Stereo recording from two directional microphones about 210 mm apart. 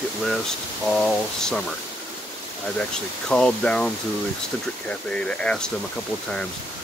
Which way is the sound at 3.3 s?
5° left (ahead or behind).